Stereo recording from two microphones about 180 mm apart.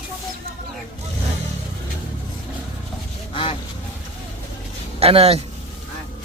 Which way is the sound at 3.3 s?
30° left (ahead or behind).